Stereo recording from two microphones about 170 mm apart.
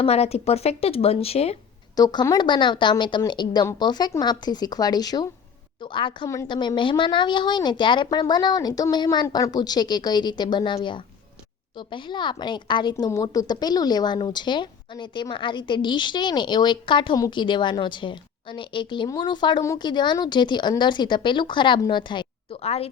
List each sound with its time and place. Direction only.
0.0 s speech: 35° left (ahead or behind)
2.0 s a woman's voice: 20° left (ahead or behind)
6.2 s a woman's voice: 20° left (ahead or behind); by 22.9 s 35° left (ahead or behind)